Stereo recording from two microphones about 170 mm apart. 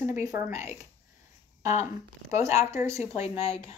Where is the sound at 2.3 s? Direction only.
40° left (ahead or behind).